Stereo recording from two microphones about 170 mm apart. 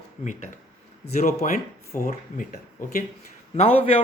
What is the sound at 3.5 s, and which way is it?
Speech, 35° left (ahead or behind).